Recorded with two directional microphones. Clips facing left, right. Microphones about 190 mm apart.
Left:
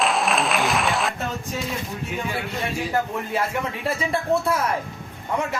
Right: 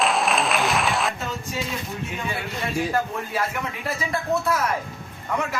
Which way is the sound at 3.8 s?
25° left (ahead or behind).